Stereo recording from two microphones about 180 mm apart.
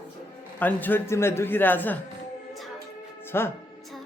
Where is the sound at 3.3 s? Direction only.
15° left (ahead or behind).